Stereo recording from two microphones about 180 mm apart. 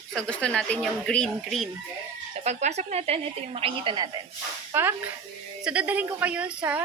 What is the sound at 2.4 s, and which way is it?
A woman's voice, 40° right (ahead or behind).